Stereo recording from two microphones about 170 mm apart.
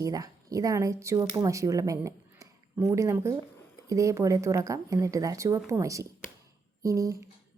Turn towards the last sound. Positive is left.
turn(degrees=-20)  # may be behind; listen again after turning